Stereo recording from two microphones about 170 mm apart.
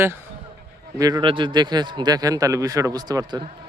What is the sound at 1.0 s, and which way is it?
A man's voice, 25° right (ahead or behind).